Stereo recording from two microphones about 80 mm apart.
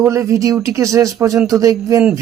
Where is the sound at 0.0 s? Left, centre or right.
Right.